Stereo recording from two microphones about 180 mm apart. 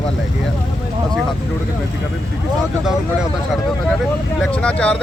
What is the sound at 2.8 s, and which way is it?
Speech, centre (ahead or behind).